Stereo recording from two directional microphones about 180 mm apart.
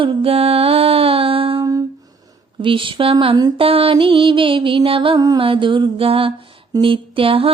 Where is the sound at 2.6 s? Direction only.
30° right (ahead or behind).